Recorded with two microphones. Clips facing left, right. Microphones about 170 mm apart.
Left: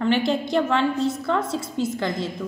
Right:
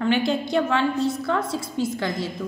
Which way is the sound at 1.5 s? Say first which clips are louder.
Even; 25° left (ahead or behind).